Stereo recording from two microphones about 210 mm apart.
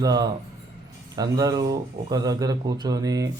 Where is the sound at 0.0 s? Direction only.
15° right (ahead or behind).